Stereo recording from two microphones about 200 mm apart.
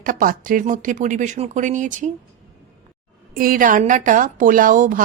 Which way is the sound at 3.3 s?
45° right (ahead or behind).